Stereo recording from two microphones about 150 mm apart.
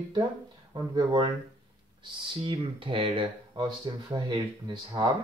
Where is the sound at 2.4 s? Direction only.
35° right (ahead or behind).